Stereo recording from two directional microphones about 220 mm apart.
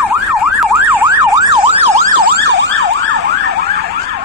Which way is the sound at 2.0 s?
50° right (ahead or behind).